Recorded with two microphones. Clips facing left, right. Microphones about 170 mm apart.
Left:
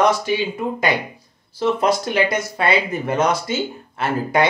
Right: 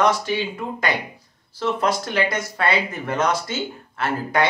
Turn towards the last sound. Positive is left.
turn(degrees=15)  # may be behind; listen again after turning